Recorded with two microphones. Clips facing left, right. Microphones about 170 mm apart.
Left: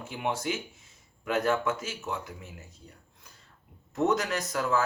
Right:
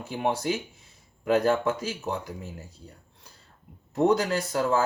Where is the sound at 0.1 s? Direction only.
35° right (ahead or behind).